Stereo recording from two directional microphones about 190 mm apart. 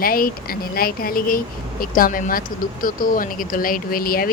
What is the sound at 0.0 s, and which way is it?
Speech, 50° left (ahead or behind).